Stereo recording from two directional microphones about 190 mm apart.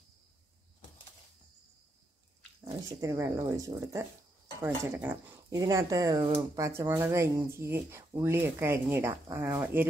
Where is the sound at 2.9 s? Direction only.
15° right (ahead or behind).